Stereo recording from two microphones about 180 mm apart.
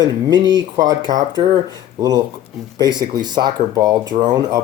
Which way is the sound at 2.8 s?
25° right (ahead or behind).